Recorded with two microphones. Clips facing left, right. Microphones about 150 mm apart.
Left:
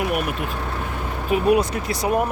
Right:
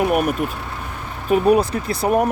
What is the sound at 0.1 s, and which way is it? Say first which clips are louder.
Speech: right 5 dB; 45° right (ahead or behind).